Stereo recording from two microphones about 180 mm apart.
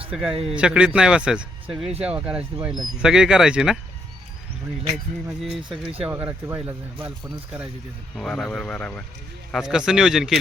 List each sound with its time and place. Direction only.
0.1 s speech: 5° right (ahead or behind)
5.6 s speech: 30° right (ahead or behind)
6.1 s speech: 10° right (ahead or behind)
8.1 s speech: centre (ahead or behind)